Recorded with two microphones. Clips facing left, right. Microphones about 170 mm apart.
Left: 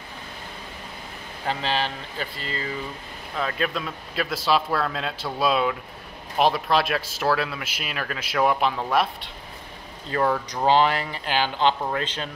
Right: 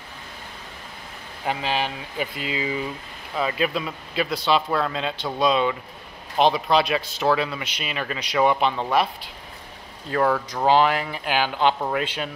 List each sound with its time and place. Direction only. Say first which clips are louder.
1.4 s speech: right 1 dB; 10° right (ahead or behind)